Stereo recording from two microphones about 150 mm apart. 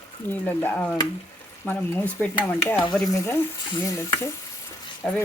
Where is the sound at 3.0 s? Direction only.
20° left (ahead or behind).